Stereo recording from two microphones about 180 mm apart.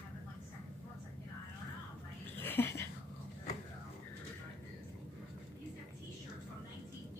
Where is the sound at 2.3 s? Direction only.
10° left (ahead or behind).